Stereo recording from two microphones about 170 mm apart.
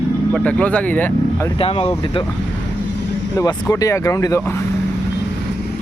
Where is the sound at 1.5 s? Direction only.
35° left (ahead or behind).